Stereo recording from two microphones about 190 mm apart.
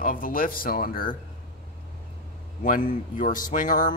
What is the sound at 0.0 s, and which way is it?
Speech, 45° left (ahead or behind).